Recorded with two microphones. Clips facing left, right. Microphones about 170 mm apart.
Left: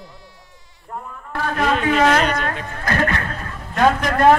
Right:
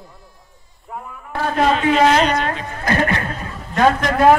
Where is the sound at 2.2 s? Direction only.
50° left (ahead or behind).